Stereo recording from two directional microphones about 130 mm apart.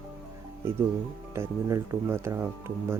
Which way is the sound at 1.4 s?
20° right (ahead or behind).